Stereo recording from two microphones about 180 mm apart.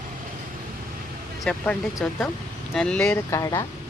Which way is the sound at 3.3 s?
20° left (ahead or behind).